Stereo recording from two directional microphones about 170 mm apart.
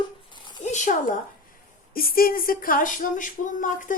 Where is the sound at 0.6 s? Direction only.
45° left (ahead or behind).